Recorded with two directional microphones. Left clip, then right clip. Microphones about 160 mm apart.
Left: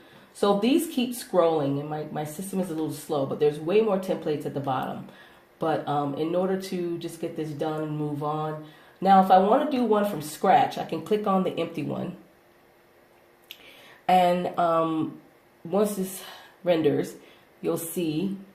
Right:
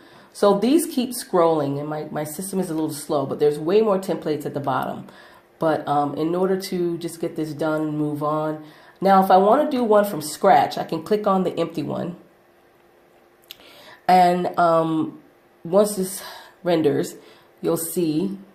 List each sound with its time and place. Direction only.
0.3 s speech: 50° right (ahead or behind)
14.0 s speech: 45° right (ahead or behind)